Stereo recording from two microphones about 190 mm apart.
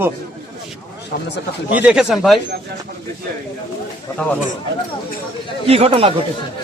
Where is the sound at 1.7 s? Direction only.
5° right (ahead or behind).